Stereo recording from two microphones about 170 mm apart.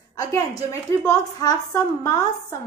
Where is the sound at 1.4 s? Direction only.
20° left (ahead or behind).